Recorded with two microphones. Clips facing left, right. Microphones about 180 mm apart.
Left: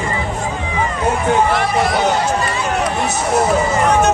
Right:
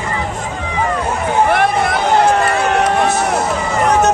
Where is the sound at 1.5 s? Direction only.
55° right (ahead or behind).